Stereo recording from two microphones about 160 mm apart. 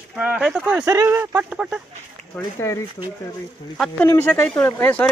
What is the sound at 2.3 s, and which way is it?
Speech, 15° left (ahead or behind).